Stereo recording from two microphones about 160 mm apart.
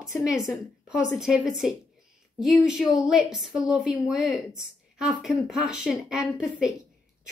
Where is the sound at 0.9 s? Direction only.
5° right (ahead or behind).